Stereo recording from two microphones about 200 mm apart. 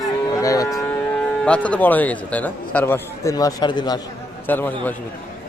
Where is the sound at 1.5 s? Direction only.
5° left (ahead or behind); by 4.0 s 20° left (ahead or behind).